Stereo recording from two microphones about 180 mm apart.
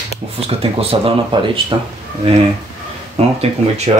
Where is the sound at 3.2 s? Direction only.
35° right (ahead or behind).